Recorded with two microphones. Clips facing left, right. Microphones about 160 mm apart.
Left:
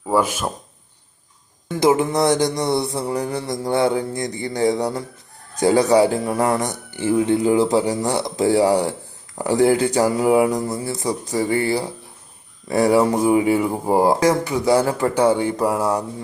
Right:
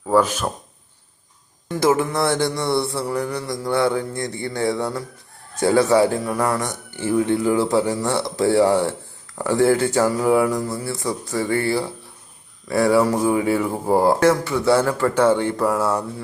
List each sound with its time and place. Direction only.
0.1 s speech: 10° left (ahead or behind)
1.6 s a sound: 20° left (ahead or behind)
12.6 s speech: 20° left (ahead or behind)